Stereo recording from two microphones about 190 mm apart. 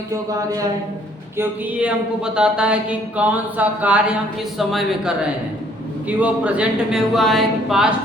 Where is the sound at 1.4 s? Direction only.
5° right (ahead or behind).